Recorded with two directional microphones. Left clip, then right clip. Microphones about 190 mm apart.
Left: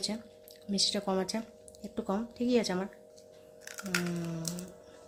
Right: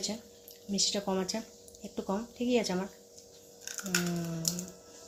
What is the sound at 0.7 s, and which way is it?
Speech, 15° left (ahead or behind).